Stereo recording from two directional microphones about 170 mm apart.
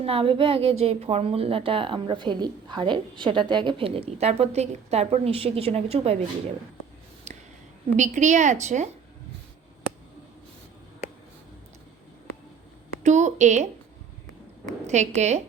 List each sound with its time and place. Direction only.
0.0 s a woman's voice: 35° right (ahead or behind)
7.3 s a sound: 40° right (ahead or behind)
7.9 s a woman's voice: 45° right (ahead or behind)
13.0 s a woman's voice: 45° right (ahead or behind)
14.8 s a woman's voice: 40° right (ahead or behind)